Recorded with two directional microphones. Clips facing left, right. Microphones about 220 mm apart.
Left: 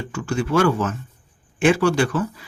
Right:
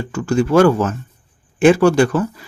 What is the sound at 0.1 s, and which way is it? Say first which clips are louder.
Speech: right 7 dB; 40° right (ahead or behind).